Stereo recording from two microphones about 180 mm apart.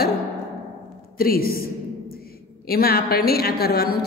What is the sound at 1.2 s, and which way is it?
Speech, 55° left (ahead or behind).